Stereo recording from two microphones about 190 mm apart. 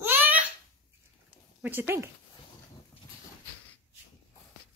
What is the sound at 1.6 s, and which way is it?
Speech, 10° right (ahead or behind).